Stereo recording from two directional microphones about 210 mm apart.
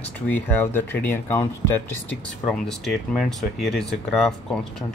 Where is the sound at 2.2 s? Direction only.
Centre (ahead or behind).